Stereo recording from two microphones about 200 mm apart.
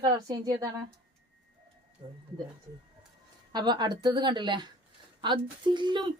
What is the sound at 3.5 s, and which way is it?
Speech, 20° right (ahead or behind).